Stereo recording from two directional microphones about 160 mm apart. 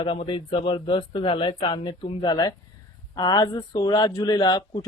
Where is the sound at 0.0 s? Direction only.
30° left (ahead or behind).